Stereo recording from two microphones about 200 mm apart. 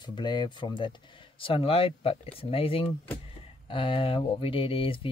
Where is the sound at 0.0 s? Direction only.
20° left (ahead or behind).